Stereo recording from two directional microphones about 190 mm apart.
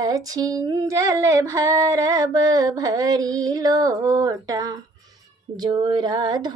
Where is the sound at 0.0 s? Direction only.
20° right (ahead or behind).